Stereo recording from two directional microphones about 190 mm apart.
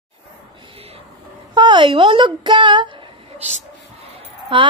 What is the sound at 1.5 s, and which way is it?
Speech, 25° right (ahead or behind).